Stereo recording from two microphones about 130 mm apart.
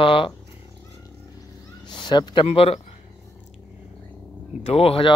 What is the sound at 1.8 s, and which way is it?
Speech, 35° left (ahead or behind).